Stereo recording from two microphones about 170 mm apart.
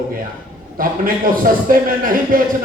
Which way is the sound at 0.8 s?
55° right (ahead or behind).